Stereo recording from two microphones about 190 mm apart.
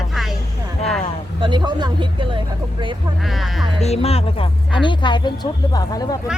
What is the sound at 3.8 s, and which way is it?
Speech, 35° left (ahead or behind).